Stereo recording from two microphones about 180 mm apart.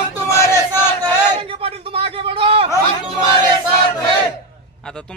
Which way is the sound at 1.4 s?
30° right (ahead or behind).